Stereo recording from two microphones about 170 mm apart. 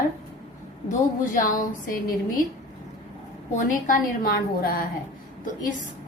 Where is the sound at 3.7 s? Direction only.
50° left (ahead or behind).